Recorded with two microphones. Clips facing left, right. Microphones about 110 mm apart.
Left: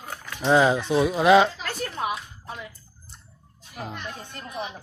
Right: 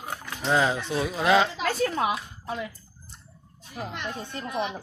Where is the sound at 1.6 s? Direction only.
90° right.